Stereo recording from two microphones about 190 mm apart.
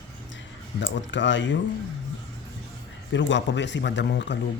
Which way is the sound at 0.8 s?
75° left (ahead or behind).